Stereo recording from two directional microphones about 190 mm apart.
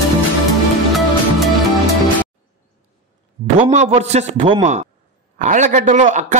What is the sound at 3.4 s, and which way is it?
A man's voice, 35° right (ahead or behind).